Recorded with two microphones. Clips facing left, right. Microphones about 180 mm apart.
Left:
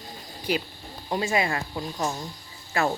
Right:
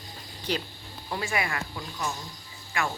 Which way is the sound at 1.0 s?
25° left (ahead or behind).